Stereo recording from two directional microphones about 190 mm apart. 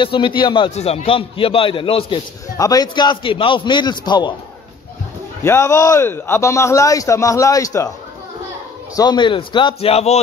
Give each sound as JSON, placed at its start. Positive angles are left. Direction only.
{"t": 0.0, "sound": "a man's voice", "side_deg": 25}
{"t": 5.4, "sound": "speech", "side_deg": 15}
{"t": 8.9, "sound": "a man's voice", "side_deg": 20}